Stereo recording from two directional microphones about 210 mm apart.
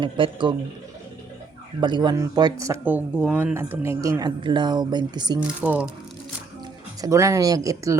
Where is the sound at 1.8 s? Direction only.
20° right (ahead or behind).